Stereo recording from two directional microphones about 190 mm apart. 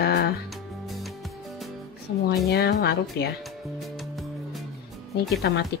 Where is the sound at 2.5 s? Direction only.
55° left (ahead or behind).